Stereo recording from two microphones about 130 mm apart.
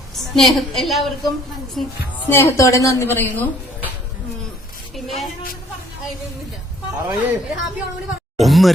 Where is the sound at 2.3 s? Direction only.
20° left (ahead or behind).